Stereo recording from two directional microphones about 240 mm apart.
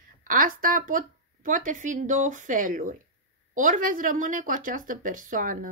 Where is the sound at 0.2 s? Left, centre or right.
Right.